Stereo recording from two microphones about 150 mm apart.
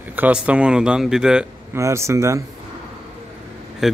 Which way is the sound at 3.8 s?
Centre (ahead or behind).